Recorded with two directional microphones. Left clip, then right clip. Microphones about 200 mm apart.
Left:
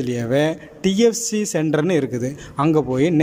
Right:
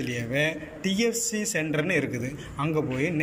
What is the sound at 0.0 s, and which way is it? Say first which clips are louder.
A man's voice: left 7 dB; 45° left (ahead or behind).